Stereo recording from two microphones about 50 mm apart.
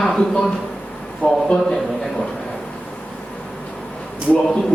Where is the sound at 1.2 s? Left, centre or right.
Left.